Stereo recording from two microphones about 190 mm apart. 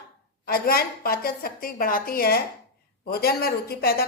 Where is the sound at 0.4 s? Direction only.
50° left (ahead or behind).